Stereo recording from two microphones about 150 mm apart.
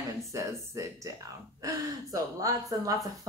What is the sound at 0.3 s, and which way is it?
Speech, 20° right (ahead or behind).